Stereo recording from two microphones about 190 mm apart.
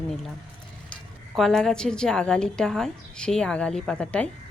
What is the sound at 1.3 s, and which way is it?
A woman's voice, centre (ahead or behind).